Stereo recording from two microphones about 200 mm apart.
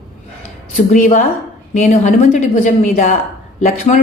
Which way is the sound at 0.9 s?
40° left (ahead or behind).